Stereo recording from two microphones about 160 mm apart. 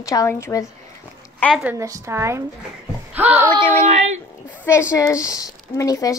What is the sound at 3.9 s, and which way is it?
Speech, 45° right (ahead or behind).